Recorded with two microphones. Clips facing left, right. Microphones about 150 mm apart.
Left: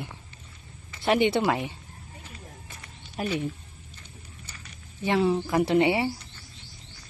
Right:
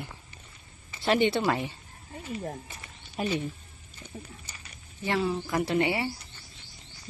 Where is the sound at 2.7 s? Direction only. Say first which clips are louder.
Even; 5° right (ahead or behind).